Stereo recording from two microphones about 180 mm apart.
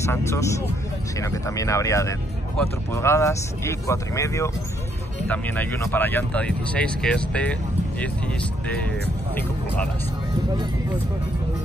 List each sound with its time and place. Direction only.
0.0 s speech: 15° left (ahead or behind)